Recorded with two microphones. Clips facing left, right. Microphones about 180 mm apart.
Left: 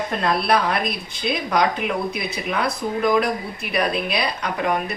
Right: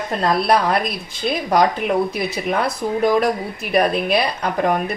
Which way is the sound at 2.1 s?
40° right (ahead or behind).